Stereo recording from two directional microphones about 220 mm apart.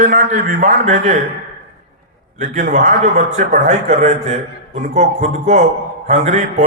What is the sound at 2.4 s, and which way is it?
A man's voice, 35° right (ahead or behind).